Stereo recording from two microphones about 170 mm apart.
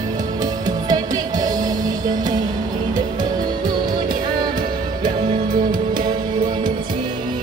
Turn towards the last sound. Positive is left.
turn(degrees=-25)  # may be behind; listen again after turning